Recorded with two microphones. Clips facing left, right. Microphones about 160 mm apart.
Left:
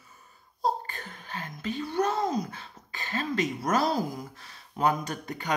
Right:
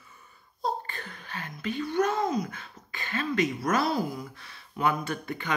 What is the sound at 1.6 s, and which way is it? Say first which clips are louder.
Speech: right 2 dB; 30° left (ahead or behind).